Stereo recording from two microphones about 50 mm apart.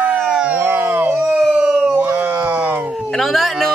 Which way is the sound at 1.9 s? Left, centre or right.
Right.